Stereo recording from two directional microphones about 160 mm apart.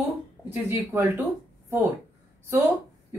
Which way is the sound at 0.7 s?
15° right (ahead or behind).